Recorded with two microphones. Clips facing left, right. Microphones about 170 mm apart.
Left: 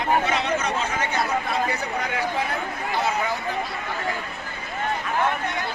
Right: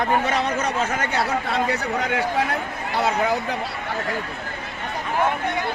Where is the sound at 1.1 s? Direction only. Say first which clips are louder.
Right 1 dB; 80° right.